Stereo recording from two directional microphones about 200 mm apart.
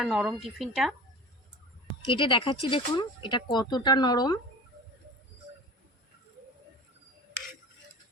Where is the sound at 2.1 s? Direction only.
25° left (ahead or behind).